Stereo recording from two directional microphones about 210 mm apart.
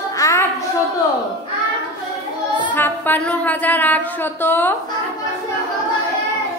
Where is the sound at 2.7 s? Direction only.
10° left (ahead or behind).